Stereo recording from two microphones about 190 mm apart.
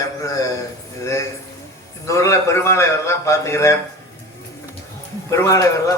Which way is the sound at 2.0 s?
15° left (ahead or behind).